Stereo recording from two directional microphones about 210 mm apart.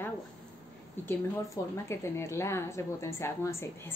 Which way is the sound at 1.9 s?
15° left (ahead or behind).